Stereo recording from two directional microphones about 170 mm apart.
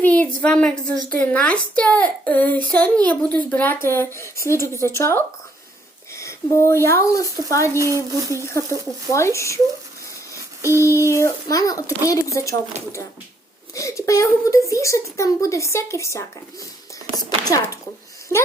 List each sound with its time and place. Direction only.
0.0 s a sound: 10° left (ahead or behind)
0.4 s a woman's voice: 5° left (ahead or behind)
7.8 s speech: 20° right (ahead or behind)
8.4 s speech: 15° left (ahead or behind)
10.3 s child singing: 15° left (ahead or behind)
11.2 s speech: 20° left (ahead or behind)
13.7 s speech: 20° left (ahead or behind)